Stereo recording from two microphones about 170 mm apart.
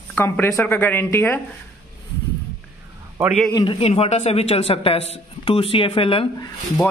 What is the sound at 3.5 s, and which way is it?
A man's voice, 30° left (ahead or behind).